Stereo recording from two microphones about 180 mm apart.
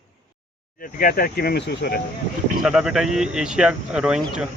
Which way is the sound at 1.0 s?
55° left (ahead or behind).